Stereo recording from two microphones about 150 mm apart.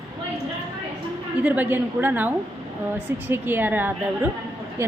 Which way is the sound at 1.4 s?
10° right (ahead or behind).